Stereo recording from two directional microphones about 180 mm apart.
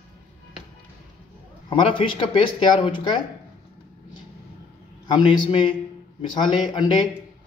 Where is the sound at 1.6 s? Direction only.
30° left (ahead or behind).